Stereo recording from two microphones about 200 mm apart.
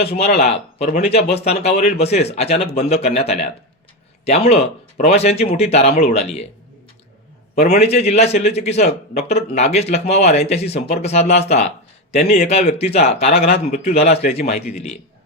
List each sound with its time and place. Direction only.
0.5 s speech: 30° left (ahead or behind)
7.8 s speech: 35° left (ahead or behind)